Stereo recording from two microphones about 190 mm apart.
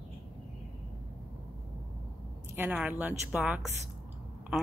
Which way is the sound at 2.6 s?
5° right (ahead or behind).